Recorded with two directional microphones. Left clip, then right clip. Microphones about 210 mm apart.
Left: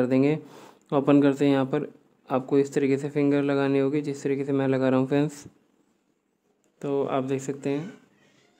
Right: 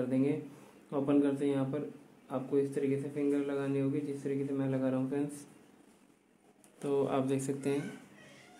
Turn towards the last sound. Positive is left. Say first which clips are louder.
# left 5 dB
turn(degrees=25)  # may be behind; listen again after turning